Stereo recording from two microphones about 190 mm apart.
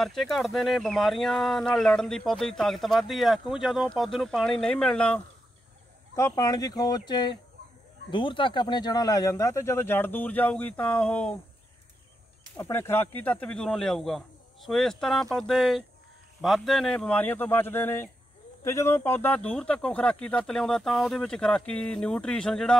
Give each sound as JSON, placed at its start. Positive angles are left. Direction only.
{"t": 0.0, "sound": "speech", "side_deg": 0}
{"t": 6.1, "sound": "speech", "side_deg": 15}
{"t": 12.5, "sound": "speech", "side_deg": 10}